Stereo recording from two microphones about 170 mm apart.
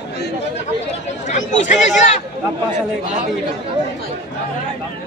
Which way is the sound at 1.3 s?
45° left (ahead or behind).